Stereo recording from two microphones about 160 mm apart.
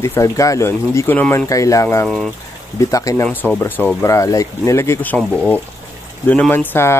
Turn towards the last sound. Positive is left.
turn(degrees=15)  # may be behind; listen again after turning